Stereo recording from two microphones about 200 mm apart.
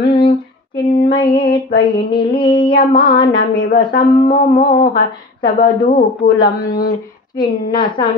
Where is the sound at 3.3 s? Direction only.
50° left (ahead or behind).